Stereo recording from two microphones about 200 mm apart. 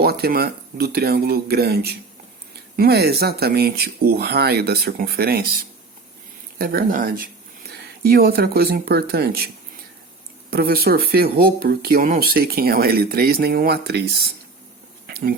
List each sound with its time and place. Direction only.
0.0 s speech: 50° right (ahead or behind)
6.6 s speech: 50° right (ahead or behind)
10.5 s speech: 50° right (ahead or behind)
15.0 s a sound: 50° right (ahead or behind)